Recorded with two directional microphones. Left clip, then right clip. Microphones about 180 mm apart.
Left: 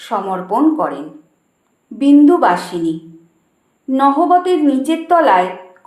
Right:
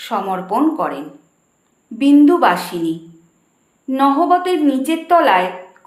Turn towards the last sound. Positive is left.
turn(degrees=-20)  # may be behind; listen again after turning